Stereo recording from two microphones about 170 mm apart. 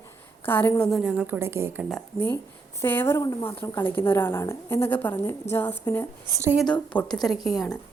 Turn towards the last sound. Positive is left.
turn(degrees=0)  # may be behind; listen again after turning